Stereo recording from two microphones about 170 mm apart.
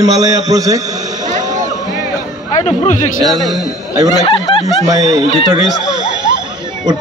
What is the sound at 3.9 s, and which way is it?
A man's voice, 20° right (ahead or behind).